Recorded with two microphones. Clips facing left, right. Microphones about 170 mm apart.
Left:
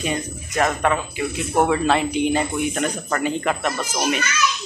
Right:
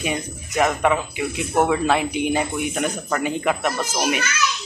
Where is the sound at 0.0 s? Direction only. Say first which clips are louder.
Left 1 dB; 10° right (ahead or behind).